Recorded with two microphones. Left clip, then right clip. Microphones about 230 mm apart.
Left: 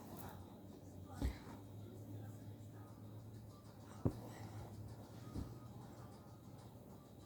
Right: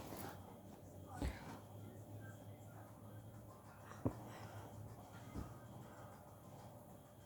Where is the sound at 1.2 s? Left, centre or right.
Centre.